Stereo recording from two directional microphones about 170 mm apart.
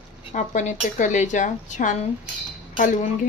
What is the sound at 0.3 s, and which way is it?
Speech, 45° left (ahead or behind).